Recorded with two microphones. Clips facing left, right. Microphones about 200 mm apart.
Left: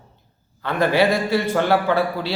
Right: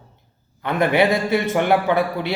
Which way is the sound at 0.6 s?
20° right (ahead or behind).